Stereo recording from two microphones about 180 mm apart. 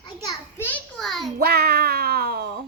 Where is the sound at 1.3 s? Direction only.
60° right (ahead or behind).